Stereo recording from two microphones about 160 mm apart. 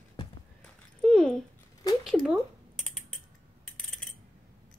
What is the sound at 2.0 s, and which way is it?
Rodents, 5° right (ahead or behind).